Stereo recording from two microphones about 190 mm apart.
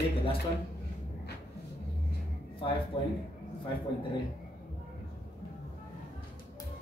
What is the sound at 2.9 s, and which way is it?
Speech, 25° left (ahead or behind).